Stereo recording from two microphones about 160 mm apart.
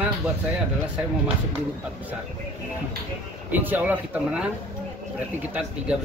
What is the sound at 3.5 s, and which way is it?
Speech, 10° right (ahead or behind).